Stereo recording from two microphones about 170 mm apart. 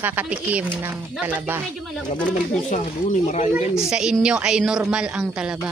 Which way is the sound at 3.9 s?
5° right (ahead or behind).